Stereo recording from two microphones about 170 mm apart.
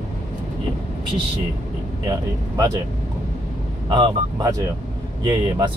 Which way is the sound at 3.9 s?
25° right (ahead or behind).